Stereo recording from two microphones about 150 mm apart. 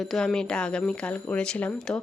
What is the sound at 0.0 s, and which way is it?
Speech, centre (ahead or behind).